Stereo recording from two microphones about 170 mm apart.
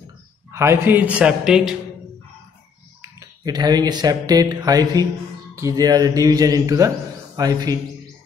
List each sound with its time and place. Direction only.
0.5 s a man's voice: 15° right (ahead or behind)
3.0 s speech: 20° right (ahead or behind)